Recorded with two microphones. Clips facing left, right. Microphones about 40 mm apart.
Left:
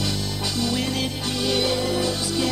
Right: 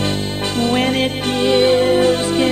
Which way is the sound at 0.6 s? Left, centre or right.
Right.